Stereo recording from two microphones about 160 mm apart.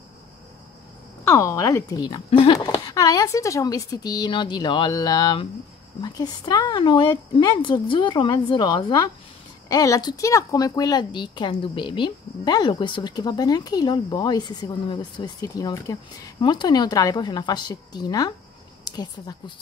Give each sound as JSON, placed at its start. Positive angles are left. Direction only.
{"t": 1.2, "sound": "a woman's voice", "side_deg": 20}